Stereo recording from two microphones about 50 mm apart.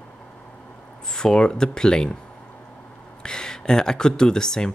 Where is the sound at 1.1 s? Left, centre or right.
Centre.